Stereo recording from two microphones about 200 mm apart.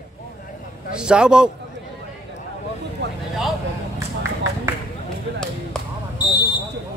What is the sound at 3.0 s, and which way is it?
Vehicle, 55° right (ahead or behind).